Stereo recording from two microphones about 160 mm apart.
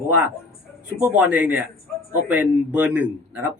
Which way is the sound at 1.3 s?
10° right (ahead or behind).